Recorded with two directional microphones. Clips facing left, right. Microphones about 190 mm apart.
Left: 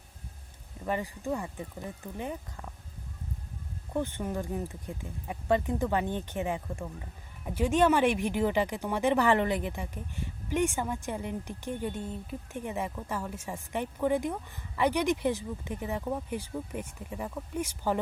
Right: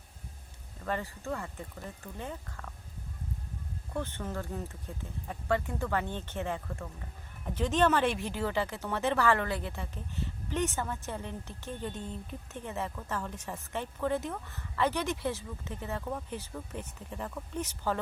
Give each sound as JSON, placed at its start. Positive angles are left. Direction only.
{"t": 0.9, "sound": "speech", "side_deg": 15}
{"t": 3.9, "sound": "speech", "side_deg": 15}